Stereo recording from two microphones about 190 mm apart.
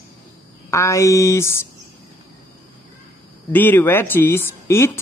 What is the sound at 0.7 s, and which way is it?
A woman's voice, 15° left (ahead or behind).